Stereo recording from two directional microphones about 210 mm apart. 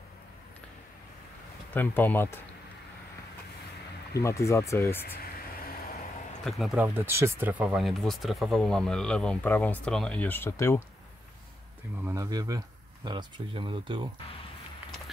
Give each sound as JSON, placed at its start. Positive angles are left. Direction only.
{"t": 1.7, "sound": "speech", "side_deg": 10}
{"t": 4.2, "sound": "speech", "side_deg": 15}
{"t": 5.0, "sound": "a sound", "side_deg": 45}
{"t": 6.4, "sound": "speech", "side_deg": 0}
{"t": 12.0, "sound": "speech", "side_deg": -15}